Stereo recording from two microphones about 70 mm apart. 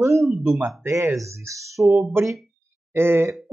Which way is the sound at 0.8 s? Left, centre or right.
Right.